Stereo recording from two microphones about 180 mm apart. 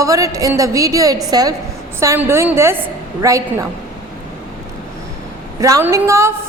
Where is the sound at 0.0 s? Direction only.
20° right (ahead or behind).